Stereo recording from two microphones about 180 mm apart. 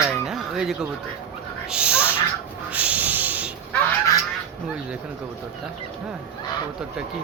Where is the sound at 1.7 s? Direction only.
5° right (ahead or behind).